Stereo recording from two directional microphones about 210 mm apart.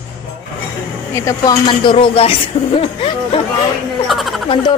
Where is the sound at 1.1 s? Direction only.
15° left (ahead or behind).